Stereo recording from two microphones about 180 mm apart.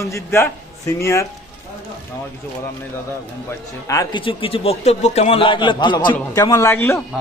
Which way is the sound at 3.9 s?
20° left (ahead or behind).